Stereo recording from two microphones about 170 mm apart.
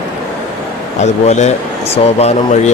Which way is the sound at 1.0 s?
40° left (ahead or behind).